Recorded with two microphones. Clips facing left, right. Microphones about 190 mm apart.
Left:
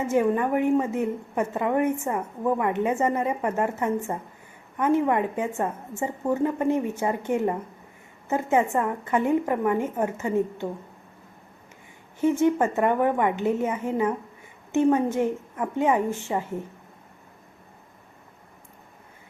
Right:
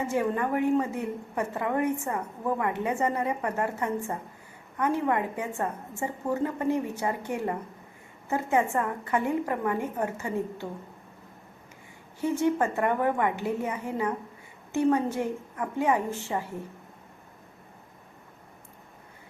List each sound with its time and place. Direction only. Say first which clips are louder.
0.1 s a woman's voice: left 7 dB; 20° left (ahead or behind)
12.2 s a woman's voice: left 4 dB; 20° left (ahead or behind)